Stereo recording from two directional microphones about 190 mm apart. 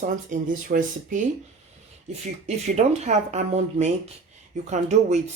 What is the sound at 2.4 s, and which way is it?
Speech, 35° right (ahead or behind).